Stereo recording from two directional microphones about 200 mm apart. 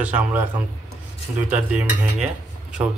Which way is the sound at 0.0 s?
10° right (ahead or behind).